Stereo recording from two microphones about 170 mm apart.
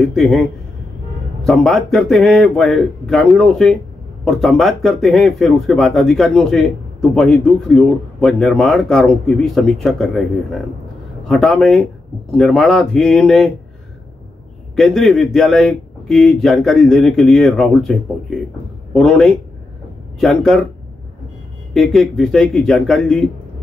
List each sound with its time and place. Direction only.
0.0 s speech: centre (ahead or behind)
14.8 s speech: centre (ahead or behind)
21.7 s speech: centre (ahead or behind)